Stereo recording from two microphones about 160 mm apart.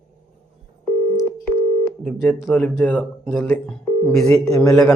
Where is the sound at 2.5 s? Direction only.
10° left (ahead or behind).